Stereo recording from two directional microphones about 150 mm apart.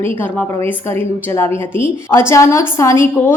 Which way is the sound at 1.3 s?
15° left (ahead or behind).